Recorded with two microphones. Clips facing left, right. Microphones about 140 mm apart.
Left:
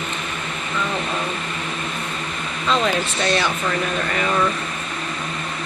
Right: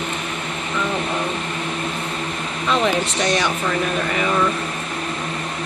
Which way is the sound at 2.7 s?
15° right (ahead or behind).